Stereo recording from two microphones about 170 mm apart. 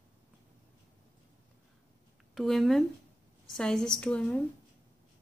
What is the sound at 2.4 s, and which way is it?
Speech, centre (ahead or behind).